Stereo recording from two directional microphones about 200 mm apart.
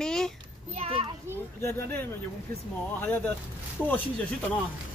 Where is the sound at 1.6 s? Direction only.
15° left (ahead or behind).